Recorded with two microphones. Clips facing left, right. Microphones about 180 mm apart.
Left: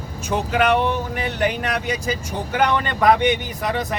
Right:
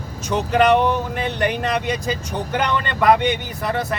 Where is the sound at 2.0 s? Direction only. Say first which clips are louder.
Right 1 dB; 10° left (ahead or behind).